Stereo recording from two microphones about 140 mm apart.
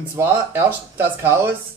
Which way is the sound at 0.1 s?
15° right (ahead or behind).